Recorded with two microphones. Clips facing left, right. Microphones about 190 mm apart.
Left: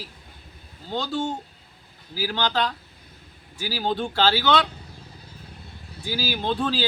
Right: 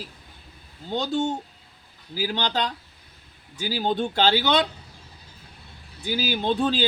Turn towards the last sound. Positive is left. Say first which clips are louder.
# right 2 dB
turn(degrees=-20)  # may be behind; listen again after turning